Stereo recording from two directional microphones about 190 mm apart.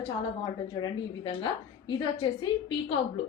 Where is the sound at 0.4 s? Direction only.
25° left (ahead or behind).